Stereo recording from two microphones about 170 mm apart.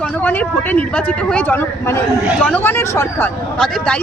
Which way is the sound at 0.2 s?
10° left (ahead or behind).